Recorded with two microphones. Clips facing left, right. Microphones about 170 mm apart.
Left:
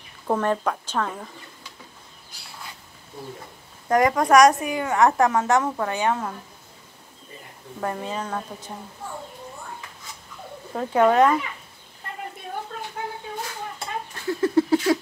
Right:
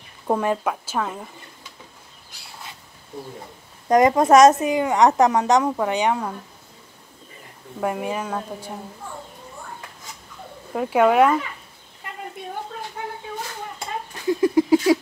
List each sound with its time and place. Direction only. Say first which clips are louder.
0.3 s speech: right 1 dB; 10° right (ahead or behind)
3.9 s a woman's voice: right 3 dB; 25° right (ahead or behind)
7.8 s speech: right 3 dB; 10° right (ahead or behind)
10.7 s speech: right 1 dB; 10° right (ahead or behind)
13.7 s a sound: right 1 dB; 15° right (ahead or behind)